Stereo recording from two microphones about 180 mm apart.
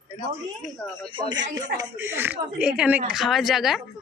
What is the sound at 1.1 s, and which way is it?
Speech, 25° right (ahead or behind).